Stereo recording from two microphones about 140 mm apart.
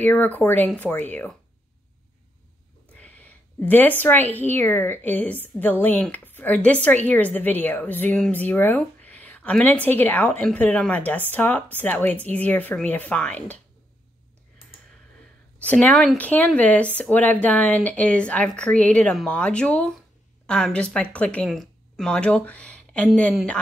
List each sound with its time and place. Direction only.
0.0 s speech: 10° left (ahead or behind)
2.9 s a sound: 10° left (ahead or behind)
4.0 s speech: 15° left (ahead or behind)
15.6 s speech: 10° left (ahead or behind)